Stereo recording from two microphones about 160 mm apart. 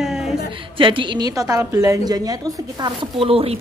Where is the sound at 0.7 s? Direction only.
30° right (ahead or behind).